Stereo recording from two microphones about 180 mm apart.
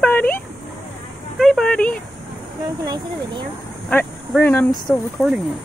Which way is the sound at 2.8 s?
20° right (ahead or behind).